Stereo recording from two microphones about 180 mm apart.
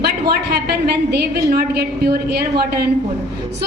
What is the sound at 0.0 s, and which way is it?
A woman's voice, 60° right (ahead or behind).